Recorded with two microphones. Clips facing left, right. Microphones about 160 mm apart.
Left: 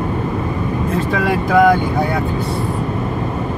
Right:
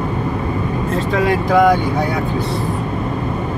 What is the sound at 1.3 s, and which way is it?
Vehicle, centre (ahead or behind).